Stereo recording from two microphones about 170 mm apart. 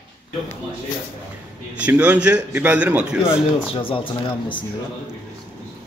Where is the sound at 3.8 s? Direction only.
30° left (ahead or behind).